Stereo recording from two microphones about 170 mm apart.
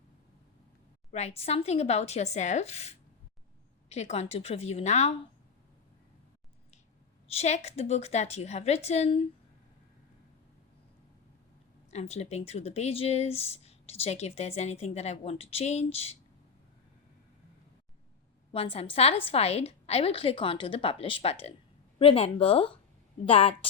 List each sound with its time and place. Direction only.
1.1 s speech: 40° left (ahead or behind)
7.3 s speech: 40° left (ahead or behind)
11.9 s speech: 40° left (ahead or behind)
18.5 s speech: 35° left (ahead or behind)